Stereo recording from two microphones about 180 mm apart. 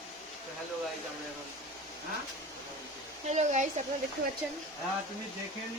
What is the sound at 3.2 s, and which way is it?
Speech, 40° right (ahead or behind).